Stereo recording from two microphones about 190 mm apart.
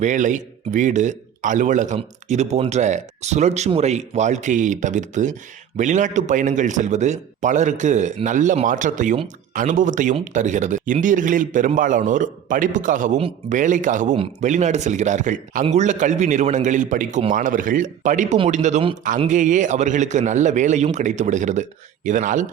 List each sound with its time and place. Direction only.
0.0 s a man's voice: 40° right (ahead or behind)